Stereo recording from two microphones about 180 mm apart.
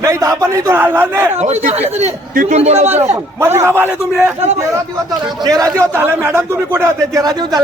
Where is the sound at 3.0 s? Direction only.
15° right (ahead or behind).